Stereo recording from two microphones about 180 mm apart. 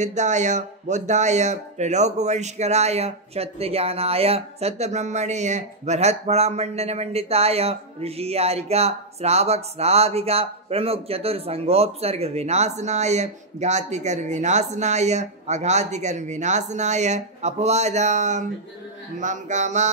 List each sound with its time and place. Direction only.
0.0 s speech: 40° right (ahead or behind)